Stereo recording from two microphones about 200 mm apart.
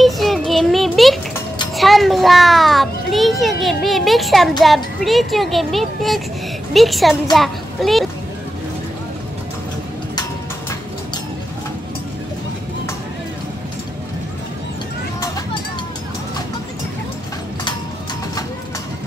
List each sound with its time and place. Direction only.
0.0 s a sound: centre (ahead or behind)
1.8 s children playing: centre (ahead or behind)
6.7 s a child's voice: centre (ahead or behind)